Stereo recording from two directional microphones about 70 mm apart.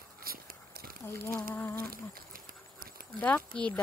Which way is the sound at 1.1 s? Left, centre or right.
Left.